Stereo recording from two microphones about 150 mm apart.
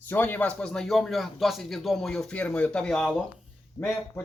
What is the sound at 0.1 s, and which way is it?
A man's voice, 10° left (ahead or behind).